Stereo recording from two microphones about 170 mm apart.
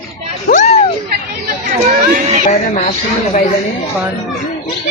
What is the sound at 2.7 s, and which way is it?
Speech, 40° left (ahead or behind).